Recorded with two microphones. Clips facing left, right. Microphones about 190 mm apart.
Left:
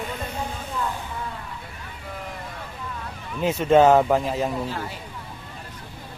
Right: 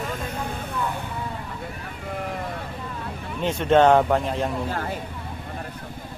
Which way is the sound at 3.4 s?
5° left (ahead or behind).